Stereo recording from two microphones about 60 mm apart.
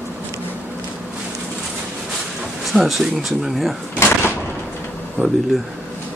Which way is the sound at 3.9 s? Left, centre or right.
Left.